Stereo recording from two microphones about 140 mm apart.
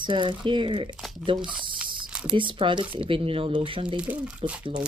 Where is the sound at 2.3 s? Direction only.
35° right (ahead or behind).